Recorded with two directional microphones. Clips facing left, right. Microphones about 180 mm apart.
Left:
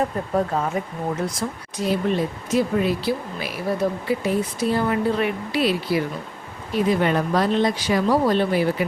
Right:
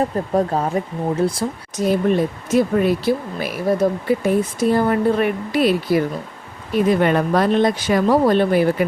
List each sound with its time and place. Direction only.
0.3 s speech: 35° right (ahead or behind)
1.8 s speech: 50° right (ahead or behind)
7.0 s speech: 55° right (ahead or behind)